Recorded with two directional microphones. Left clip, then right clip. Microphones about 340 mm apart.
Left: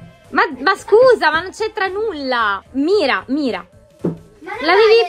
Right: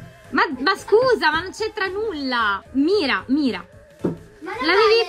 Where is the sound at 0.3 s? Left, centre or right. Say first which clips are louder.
Left 4 dB; centre.